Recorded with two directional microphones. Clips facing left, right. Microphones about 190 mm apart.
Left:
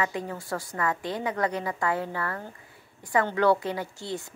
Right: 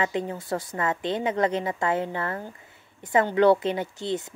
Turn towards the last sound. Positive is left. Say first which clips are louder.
# right 5 dB
turn(degrees=-20)  # may be behind; listen again after turning